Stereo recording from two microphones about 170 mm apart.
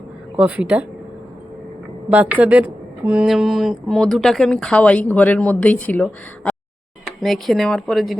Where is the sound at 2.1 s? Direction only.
10° right (ahead or behind).